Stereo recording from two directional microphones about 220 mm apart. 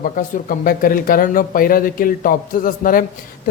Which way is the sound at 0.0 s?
40° left (ahead or behind).